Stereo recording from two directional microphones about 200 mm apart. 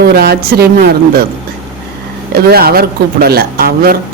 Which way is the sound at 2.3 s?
50° right (ahead or behind).